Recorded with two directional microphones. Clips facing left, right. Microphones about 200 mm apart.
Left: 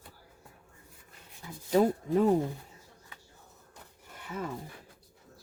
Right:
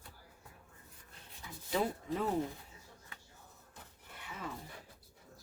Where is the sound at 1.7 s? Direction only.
45° left (ahead or behind).